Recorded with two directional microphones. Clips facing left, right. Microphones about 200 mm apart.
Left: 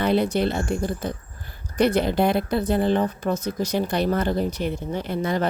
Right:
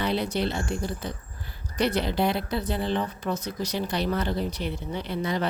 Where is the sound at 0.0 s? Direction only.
50° left (ahead or behind).